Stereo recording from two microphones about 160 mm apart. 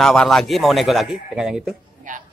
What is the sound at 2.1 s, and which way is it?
Speech, 55° right (ahead or behind).